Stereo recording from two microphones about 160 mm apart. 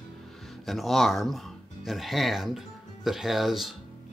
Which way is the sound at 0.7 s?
Centre (ahead or behind).